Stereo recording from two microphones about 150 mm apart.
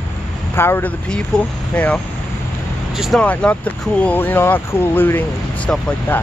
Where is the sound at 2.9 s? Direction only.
Centre (ahead or behind).